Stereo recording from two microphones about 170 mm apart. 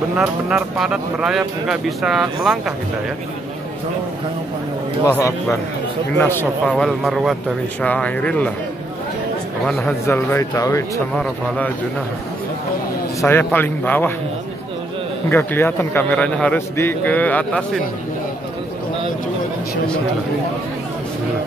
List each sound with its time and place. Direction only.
0.2 s speech: centre (ahead or behind)
5.0 s a man's voice: 15° left (ahead or behind)
6.6 s a man's voice: centre (ahead or behind)
9.7 s speech: centre (ahead or behind)
10.0 s a man's voice: 15° left (ahead or behind)
11.1 s a man's voice: 5° left (ahead or behind)
13.2 s a man's voice: 10° left (ahead or behind)
15.2 s a man's voice: 15° left (ahead or behind)